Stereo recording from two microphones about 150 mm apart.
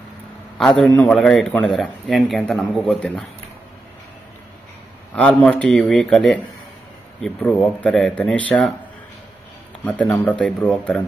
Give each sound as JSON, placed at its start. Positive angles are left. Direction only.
{"t": 0.6, "sound": "a man's voice", "side_deg": 5}
{"t": 5.1, "sound": "a man's voice", "side_deg": 10}
{"t": 9.8, "sound": "speech", "side_deg": 10}